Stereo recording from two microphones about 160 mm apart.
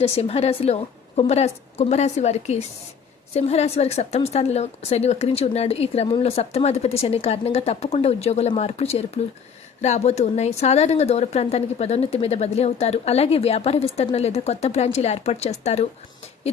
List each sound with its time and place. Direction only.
0.0 s a woman's voice: 40° left (ahead or behind)